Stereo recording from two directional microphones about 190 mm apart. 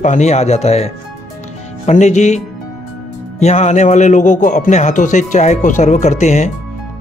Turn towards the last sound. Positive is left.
turn(degrees=35)  # may be behind; listen again after turning